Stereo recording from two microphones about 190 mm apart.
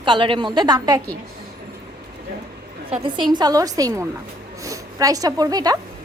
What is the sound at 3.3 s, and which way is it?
A woman's voice, 20° right (ahead or behind).